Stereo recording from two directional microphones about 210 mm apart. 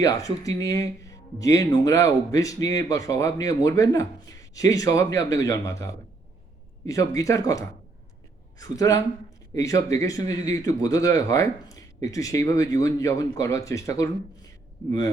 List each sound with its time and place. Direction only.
0.0 s speech: 15° left (ahead or behind)
6.8 s speech: 15° left (ahead or behind)